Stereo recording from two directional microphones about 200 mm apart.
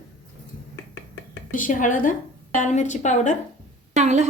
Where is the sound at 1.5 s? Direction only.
40° left (ahead or behind).